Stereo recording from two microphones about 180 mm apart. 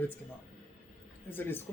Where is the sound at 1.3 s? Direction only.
10° left (ahead or behind).